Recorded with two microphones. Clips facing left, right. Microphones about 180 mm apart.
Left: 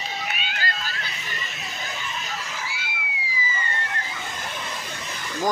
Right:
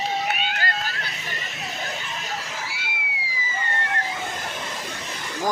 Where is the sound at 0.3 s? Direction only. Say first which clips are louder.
Right 4 dB; 55° right (ahead or behind).